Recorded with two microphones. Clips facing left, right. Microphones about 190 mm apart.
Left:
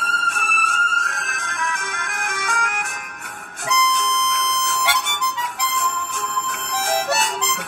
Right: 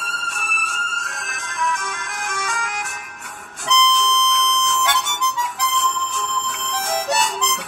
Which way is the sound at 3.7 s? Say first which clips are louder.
Right 2 dB; 10° left (ahead or behind).